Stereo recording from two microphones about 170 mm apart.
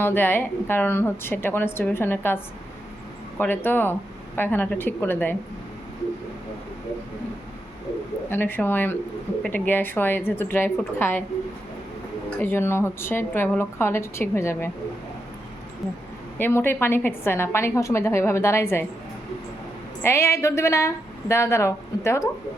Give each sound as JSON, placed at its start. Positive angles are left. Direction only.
{"t": 0.0, "sound": "a woman's voice", "side_deg": 10}
{"t": 8.3, "sound": "a woman's voice", "side_deg": 10}
{"t": 12.4, "sound": "a woman's voice", "side_deg": 15}
{"t": 16.4, "sound": "a woman's voice", "side_deg": 15}
{"t": 20.0, "sound": "a woman's voice", "side_deg": 15}